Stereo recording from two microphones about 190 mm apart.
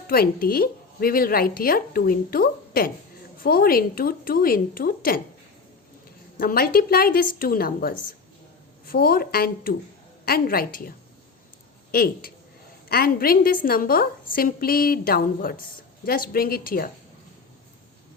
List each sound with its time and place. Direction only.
0.1 s a woman's voice: 50° left (ahead or behind)
6.4 s a woman's voice: 50° left (ahead or behind)